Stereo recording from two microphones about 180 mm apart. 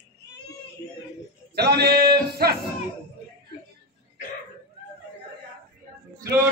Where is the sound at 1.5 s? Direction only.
65° right (ahead or behind).